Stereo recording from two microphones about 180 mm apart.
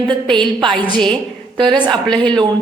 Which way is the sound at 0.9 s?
5° left (ahead or behind).